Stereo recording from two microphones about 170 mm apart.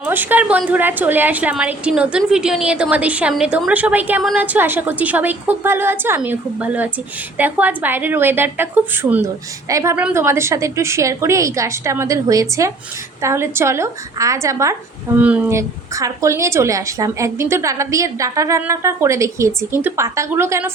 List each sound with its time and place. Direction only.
0.0 s a woman's voice: 10° right (ahead or behind)